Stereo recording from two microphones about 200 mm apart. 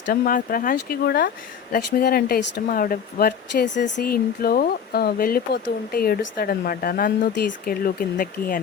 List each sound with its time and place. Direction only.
0.1 s speech: 45° left (ahead or behind)